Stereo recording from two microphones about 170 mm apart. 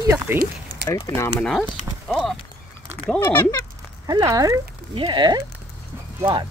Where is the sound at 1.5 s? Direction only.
5° left (ahead or behind).